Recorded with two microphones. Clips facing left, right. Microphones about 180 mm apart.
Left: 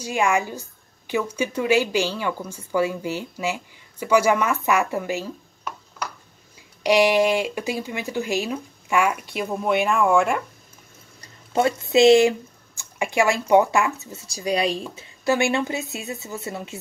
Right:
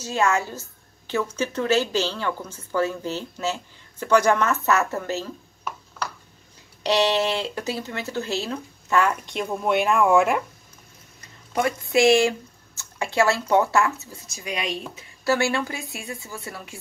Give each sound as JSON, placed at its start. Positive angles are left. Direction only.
{"t": 0.0, "sound": "speech", "side_deg": 15}
{"t": 6.8, "sound": "speech", "side_deg": 10}
{"t": 11.1, "sound": "speech", "side_deg": 25}
{"t": 14.2, "sound": "speech", "side_deg": 35}
{"t": 15.0, "sound": "speech", "side_deg": 15}